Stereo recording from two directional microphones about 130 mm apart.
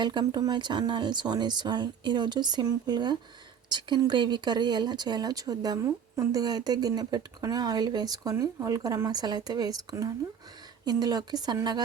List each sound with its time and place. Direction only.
0.0 s speech: 35° right (ahead or behind)